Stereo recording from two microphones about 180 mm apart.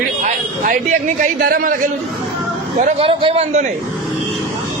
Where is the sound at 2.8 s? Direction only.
45° right (ahead or behind).